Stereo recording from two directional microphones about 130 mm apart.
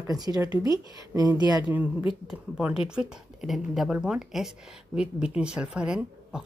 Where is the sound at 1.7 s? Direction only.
15° right (ahead or behind).